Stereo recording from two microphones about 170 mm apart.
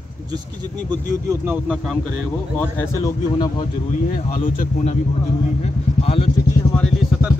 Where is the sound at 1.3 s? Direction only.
5° right (ahead or behind).